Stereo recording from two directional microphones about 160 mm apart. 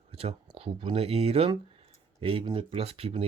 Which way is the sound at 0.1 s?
40° right (ahead or behind).